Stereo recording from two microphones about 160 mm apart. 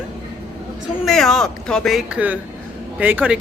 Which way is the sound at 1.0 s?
Centre (ahead or behind).